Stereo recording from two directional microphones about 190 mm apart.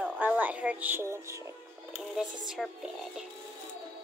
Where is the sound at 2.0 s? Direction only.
Centre (ahead or behind).